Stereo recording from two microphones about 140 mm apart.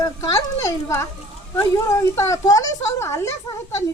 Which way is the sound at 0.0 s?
25° left (ahead or behind).